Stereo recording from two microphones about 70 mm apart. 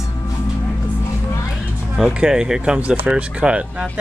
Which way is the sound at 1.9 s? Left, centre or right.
Centre.